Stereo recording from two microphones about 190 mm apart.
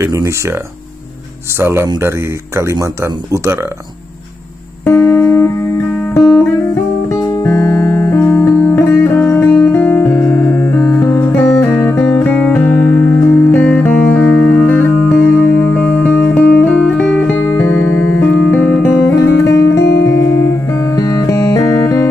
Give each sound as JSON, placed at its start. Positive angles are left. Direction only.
{"t": 0.0, "sound": "speech", "side_deg": -15}
{"t": 1.6, "sound": "speech", "side_deg": -15}
{"t": 4.8, "sound": "music", "side_deg": 10}
{"t": 6.1, "sound": "guitar", "side_deg": 10}
{"t": 18.5, "sound": "music", "side_deg": 10}